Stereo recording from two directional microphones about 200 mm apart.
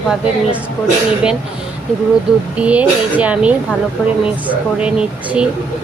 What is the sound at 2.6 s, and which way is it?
A woman's voice, 5° right (ahead or behind).